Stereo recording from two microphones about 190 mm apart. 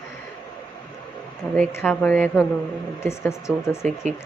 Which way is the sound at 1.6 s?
5° left (ahead or behind).